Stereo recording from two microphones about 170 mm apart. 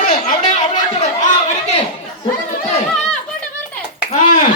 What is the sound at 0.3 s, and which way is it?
Chatter, 50° left (ahead or behind).